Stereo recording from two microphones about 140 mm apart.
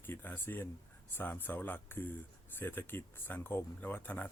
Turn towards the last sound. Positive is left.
turn(degrees=15)  # may be behind; listen again after turning